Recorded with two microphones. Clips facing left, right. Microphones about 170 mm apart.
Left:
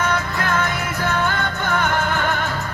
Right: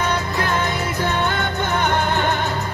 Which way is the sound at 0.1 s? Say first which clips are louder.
Even; 25° right (ahead or behind).